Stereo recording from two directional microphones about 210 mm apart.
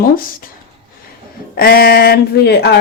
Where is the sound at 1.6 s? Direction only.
45° left (ahead or behind).